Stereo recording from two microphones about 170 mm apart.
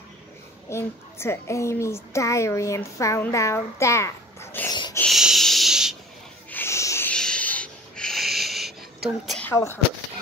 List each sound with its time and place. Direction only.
0.7 s a woman's voice: 15° left (ahead or behind)
4.9 s wheeze: centre (ahead or behind)
6.5 s snort: 15° left (ahead or behind); by 8.7 s centre (ahead or behind)
9.2 s speech: centre (ahead or behind)
9.5 s a woman's voice: 15° left (ahead or behind)